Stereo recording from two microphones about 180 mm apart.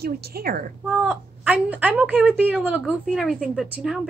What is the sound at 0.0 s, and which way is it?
Speech, 55° right (ahead or behind).